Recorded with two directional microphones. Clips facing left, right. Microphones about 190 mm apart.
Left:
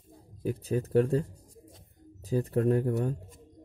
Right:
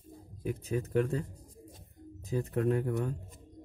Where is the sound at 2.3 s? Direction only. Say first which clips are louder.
Left 4 dB; 35° left (ahead or behind).